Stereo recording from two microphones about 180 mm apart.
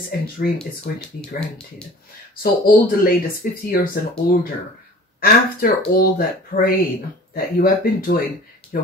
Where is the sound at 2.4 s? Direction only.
55° left (ahead or behind).